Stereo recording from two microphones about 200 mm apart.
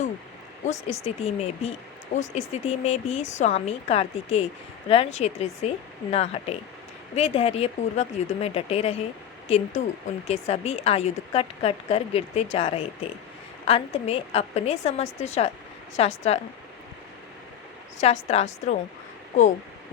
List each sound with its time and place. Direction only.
0.6 s speech: 35° left (ahead or behind)
17.9 s speech: 35° left (ahead or behind)